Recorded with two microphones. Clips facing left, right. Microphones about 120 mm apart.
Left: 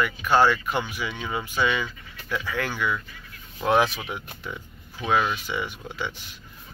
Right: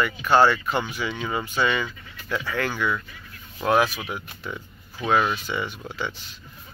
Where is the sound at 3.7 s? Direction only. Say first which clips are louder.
Even; 25° left (ahead or behind).